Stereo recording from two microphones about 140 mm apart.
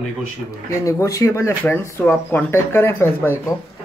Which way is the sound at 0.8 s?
20° left (ahead or behind).